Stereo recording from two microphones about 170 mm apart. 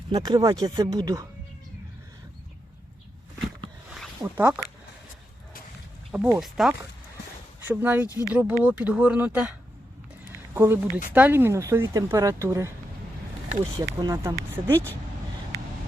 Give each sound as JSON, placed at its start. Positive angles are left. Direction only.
{"t": 0.1, "sound": "speech", "side_deg": -25}
{"t": 4.2, "sound": "speech", "side_deg": -15}
{"t": 6.1, "sound": "speech", "side_deg": -15}
{"t": 6.4, "sound": "speech", "side_deg": 0}
{"t": 7.6, "sound": "speech", "side_deg": -10}
{"t": 8.0, "sound": "speech", "side_deg": 20}
{"t": 8.3, "sound": "speech", "side_deg": -10}
{"t": 13.7, "sound": "speech", "side_deg": -20}